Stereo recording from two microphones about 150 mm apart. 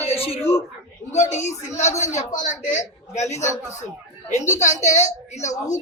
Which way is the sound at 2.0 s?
55° left (ahead or behind).